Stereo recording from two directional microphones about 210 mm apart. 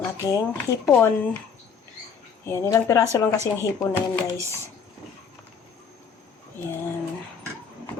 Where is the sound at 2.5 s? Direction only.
15° left (ahead or behind).